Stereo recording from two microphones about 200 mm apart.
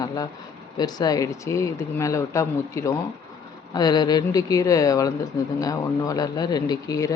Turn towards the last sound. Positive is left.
turn(degrees=15)  # may be behind; listen again after turning